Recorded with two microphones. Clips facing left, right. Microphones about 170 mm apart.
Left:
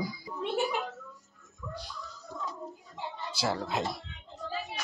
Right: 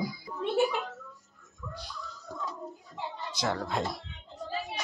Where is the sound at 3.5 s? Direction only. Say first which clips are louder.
Even; 25° left (ahead or behind).